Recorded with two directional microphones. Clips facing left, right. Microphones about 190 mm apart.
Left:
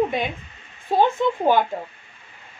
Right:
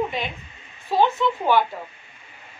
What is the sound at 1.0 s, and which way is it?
Speech, 50° left (ahead or behind).